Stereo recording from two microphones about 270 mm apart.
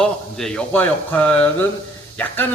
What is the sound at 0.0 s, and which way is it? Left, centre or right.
A man's voice, centre.